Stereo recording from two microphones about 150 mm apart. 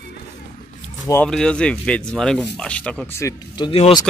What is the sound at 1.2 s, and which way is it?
Speech, 5° left (ahead or behind).